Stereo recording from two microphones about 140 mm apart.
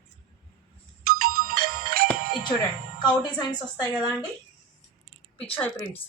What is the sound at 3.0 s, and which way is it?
Speech, 30° left (ahead or behind).